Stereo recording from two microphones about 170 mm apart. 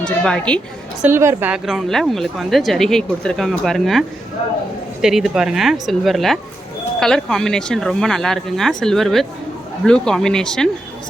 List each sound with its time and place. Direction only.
0.0 s a woman's voice: 5° left (ahead or behind)
1.0 s a woman's voice: 15° right (ahead or behind); by 4.0 s centre (ahead or behind)
5.0 s a woman's voice: 5° right (ahead or behind)